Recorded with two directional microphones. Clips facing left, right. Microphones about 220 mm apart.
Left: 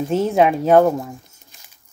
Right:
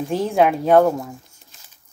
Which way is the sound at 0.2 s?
Centre (ahead or behind).